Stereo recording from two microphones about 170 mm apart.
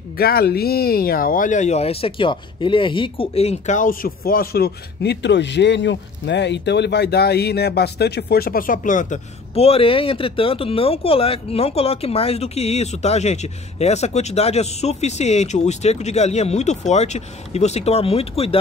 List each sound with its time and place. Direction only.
0.2 s speech: 65° left (ahead or behind); by 18.6 s 35° left (ahead or behind)